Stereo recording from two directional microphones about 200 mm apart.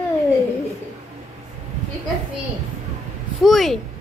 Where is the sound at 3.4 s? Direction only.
Centre (ahead or behind).